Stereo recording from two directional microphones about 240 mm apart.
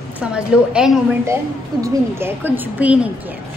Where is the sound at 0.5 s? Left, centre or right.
Centre.